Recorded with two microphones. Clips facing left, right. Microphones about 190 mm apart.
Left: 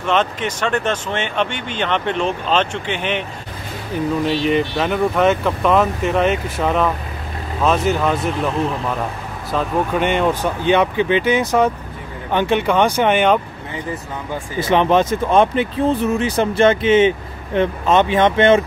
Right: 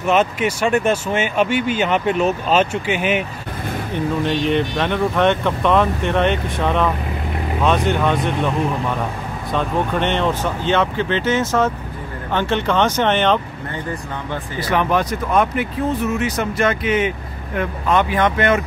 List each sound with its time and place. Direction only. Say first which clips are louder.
0.0 s speech: right 2 dB; 10° right (ahead or behind)
3.9 s speech: left 2 dB; 5° left (ahead or behind)
14.6 s speech: left 4 dB; 25° left (ahead or behind)